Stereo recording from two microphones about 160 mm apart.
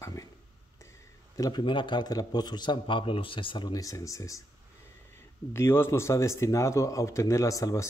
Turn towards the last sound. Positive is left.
turn(degrees=20)  # may be behind; listen again after turning